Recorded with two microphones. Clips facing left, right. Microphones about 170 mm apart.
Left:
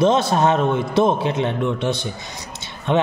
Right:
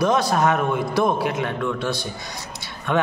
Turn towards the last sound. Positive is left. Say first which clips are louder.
# left 3 dB
turn(degrees=25)  # may be behind; listen again after turning